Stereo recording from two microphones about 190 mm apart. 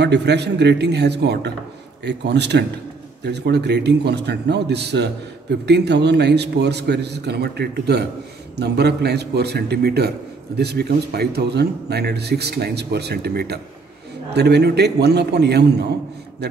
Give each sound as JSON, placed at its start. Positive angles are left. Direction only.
{"t": 0.0, "sound": "a man's voice", "side_deg": -65}